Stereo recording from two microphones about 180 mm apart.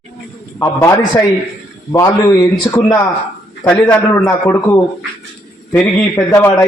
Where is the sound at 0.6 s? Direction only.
15° left (ahead or behind).